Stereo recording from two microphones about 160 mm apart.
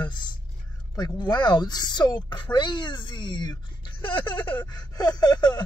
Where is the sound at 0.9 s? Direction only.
25° left (ahead or behind).